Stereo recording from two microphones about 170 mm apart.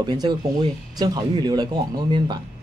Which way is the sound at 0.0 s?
25° right (ahead or behind).